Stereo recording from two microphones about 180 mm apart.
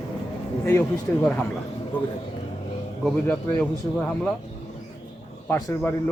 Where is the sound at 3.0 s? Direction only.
10° left (ahead or behind).